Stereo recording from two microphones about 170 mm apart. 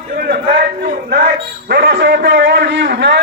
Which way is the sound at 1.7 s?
90° right.